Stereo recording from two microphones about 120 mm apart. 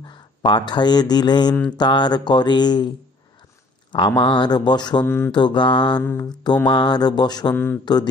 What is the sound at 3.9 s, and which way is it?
Speech, 40° left (ahead or behind).